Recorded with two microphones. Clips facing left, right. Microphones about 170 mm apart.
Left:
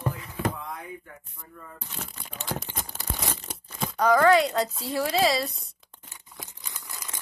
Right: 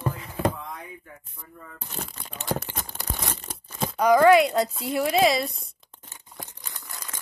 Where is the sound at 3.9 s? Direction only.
15° right (ahead or behind).